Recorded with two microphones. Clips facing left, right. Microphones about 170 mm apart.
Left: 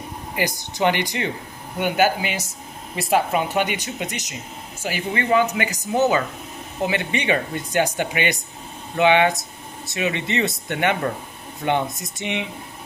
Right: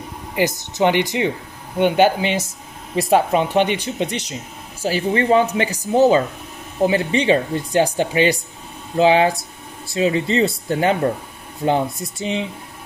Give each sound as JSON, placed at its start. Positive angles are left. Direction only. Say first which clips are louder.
{"t": 0.4, "sound": "speech", "louder": "right 4 dB", "side_deg": -20}